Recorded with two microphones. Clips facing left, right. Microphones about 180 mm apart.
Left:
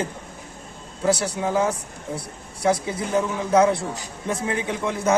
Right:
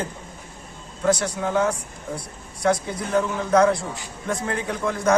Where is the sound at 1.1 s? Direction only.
30° left (ahead or behind).